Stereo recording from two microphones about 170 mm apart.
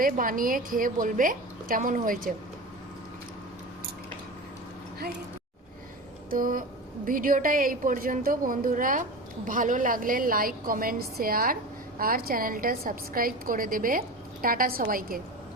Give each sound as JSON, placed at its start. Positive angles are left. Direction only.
{"t": 0.0, "sound": "a woman's voice", "side_deg": -55}
{"t": 6.3, "sound": "a woman's voice", "side_deg": -55}